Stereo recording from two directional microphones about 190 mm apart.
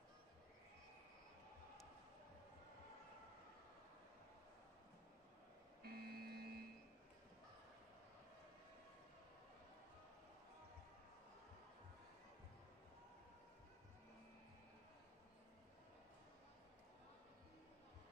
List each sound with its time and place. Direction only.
5.9 s vehicle: 55° right (ahead or behind)